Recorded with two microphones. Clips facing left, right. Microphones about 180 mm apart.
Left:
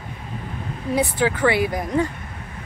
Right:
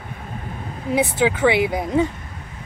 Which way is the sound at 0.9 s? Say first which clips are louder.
Right 2 dB; 20° right (ahead or behind).